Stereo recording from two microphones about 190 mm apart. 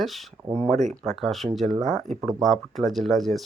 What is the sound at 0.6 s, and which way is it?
Speech, 40° right (ahead or behind).